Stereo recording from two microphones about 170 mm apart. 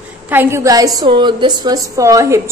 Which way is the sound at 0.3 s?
15° right (ahead or behind).